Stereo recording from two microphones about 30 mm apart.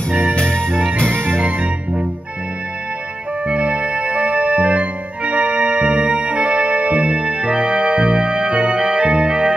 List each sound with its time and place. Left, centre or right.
0.4 s music: left
1.4 s music: right
3.4 s organ: right